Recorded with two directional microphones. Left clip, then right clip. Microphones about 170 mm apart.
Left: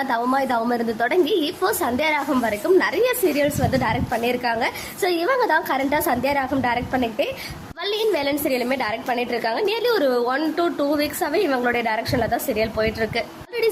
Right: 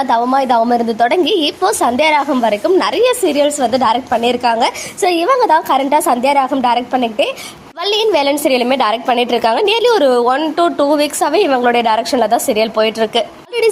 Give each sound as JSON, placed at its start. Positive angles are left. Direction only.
{"t": 0.0, "sound": "a woman's voice", "side_deg": -15}